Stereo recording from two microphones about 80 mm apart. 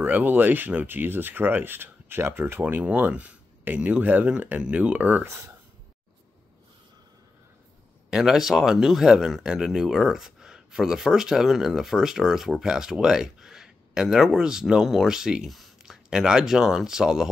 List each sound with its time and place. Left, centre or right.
0.0 s speech: right
2.6 s speech: centre
8.1 s speech: centre